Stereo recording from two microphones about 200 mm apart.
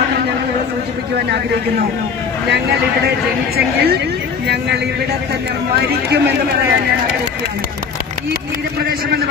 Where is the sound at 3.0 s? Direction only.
50° right (ahead or behind).